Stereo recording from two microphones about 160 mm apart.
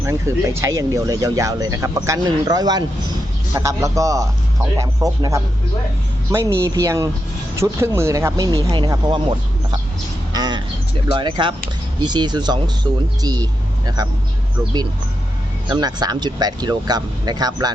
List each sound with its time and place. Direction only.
0.0 s speech: 15° right (ahead or behind)
10.3 s a sound: 25° right (ahead or behind)
11.1 s speech: 30° right (ahead or behind)
15.7 s speech: 25° right (ahead or behind)